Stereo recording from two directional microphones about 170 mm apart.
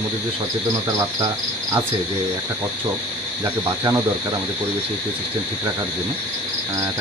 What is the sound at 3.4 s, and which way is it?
Speech, 15° right (ahead or behind).